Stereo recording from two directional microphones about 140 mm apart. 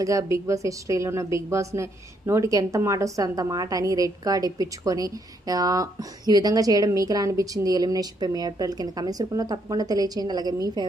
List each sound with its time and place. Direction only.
0.0 s a woman's voice: 20° right (ahead or behind)